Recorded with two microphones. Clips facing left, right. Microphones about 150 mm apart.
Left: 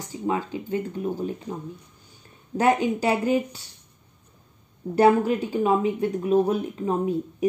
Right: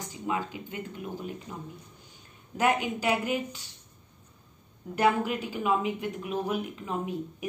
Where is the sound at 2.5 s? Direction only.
35° left (ahead or behind).